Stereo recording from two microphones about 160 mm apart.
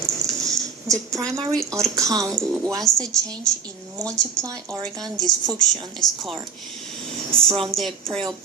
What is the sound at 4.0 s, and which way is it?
Speech, 25° right (ahead or behind).